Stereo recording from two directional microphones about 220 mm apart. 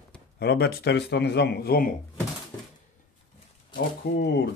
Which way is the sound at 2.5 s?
5° left (ahead or behind).